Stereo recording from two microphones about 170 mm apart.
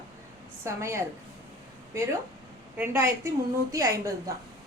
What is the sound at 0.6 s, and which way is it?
A woman's voice, 15° right (ahead or behind).